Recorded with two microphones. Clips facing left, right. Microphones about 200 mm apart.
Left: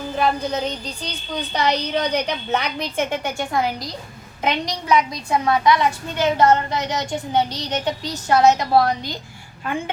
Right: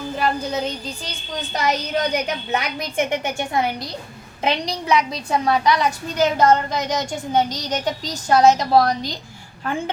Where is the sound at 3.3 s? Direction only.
25° right (ahead or behind).